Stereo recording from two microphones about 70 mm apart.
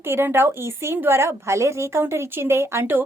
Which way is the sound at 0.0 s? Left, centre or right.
Right.